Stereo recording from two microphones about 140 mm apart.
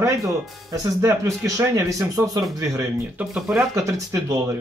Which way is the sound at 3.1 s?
5° right (ahead or behind).